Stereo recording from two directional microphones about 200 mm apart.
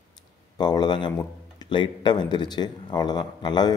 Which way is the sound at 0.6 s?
20° left (ahead or behind).